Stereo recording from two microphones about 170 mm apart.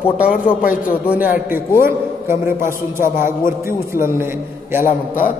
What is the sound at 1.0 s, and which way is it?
A man's voice, 10° right (ahead or behind).